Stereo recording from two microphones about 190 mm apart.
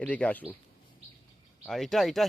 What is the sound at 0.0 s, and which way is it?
Speech, 5° left (ahead or behind).